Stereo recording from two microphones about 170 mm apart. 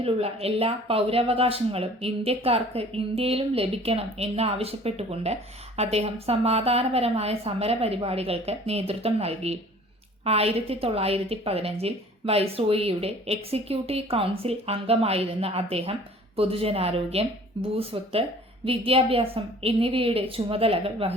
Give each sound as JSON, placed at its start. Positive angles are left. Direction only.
{"t": 0.0, "sound": "speech", "side_deg": -35}